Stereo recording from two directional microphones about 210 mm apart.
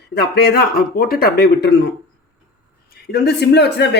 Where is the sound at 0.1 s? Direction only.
50° left (ahead or behind).